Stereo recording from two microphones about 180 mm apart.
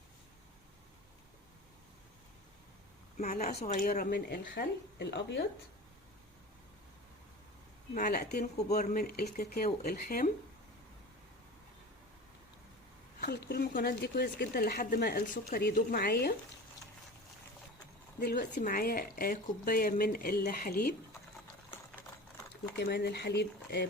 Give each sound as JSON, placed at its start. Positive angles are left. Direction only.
{"t": 3.2, "sound": "speech", "side_deg": 45}
{"t": 7.9, "sound": "speech", "side_deg": 50}
{"t": 13.2, "sound": "speech", "side_deg": 65}
{"t": 18.2, "sound": "speech", "side_deg": 65}
{"t": 22.8, "sound": "speech", "side_deg": 65}